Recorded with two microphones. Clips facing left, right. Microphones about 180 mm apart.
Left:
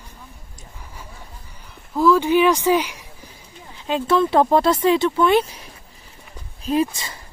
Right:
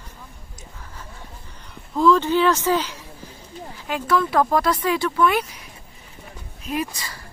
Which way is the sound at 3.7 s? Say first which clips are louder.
Left 3 dB; 25° left (ahead or behind).